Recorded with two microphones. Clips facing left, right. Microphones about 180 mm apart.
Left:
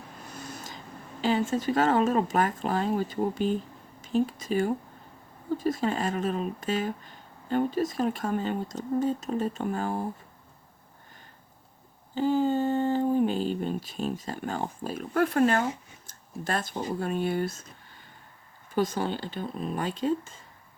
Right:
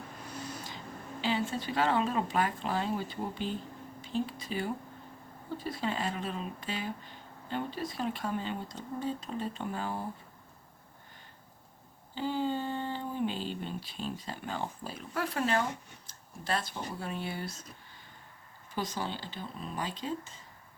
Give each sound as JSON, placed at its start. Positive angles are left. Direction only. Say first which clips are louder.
{"t": 0.3, "sound": "a sound", "louder": "even", "side_deg": 45}
{"t": 1.2, "sound": "speech", "louder": "left 7 dB", "side_deg": 45}
{"t": 12.1, "sound": "speech", "louder": "left 8 dB", "side_deg": 45}
{"t": 18.7, "sound": "speech", "louder": "left 8 dB", "side_deg": 50}